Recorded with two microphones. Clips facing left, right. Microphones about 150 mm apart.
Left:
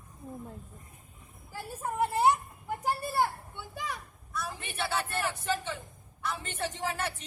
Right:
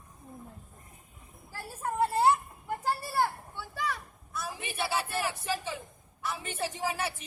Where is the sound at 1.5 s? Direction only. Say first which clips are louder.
Right 1 dB; 20° left (ahead or behind).